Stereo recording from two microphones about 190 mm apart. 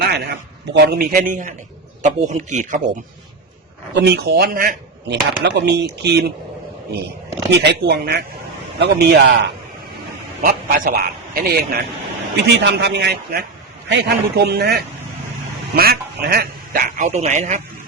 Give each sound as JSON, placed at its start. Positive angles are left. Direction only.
{"t": 0.0, "sound": "a man's voice", "side_deg": -60}
{"t": 3.9, "sound": "speech", "side_deg": -65}
{"t": 5.4, "sound": "speech", "side_deg": -65}
{"t": 7.6, "sound": "speech", "side_deg": -60}
{"t": 10.4, "sound": "speech", "side_deg": -45}
{"t": 12.5, "sound": "speech", "side_deg": -65}